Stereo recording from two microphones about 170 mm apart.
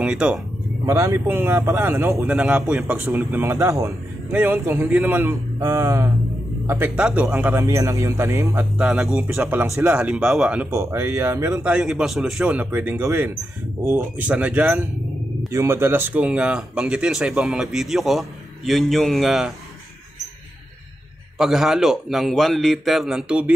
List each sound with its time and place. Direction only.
0.0 s speech: 5° right (ahead or behind)
8.7 s speech: 5° right (ahead or behind)
11.7 s speech: 5° right (ahead or behind)
21.4 s speech: centre (ahead or behind)